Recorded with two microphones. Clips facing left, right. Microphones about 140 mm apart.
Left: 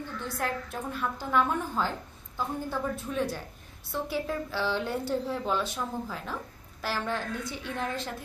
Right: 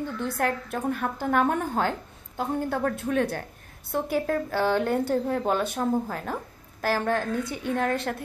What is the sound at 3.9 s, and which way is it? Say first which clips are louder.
A woman's voice: right 6 dB; 50° right (ahead or behind).